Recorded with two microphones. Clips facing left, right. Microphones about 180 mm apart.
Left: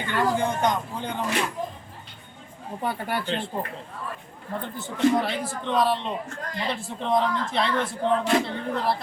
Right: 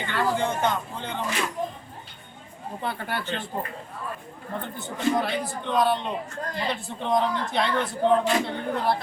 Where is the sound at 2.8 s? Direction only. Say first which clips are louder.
Left 3 dB; 10° left (ahead or behind).